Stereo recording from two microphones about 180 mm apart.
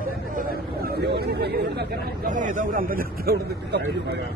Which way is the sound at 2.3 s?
45° right (ahead or behind).